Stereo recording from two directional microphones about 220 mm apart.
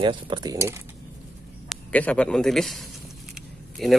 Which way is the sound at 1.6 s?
5° left (ahead or behind).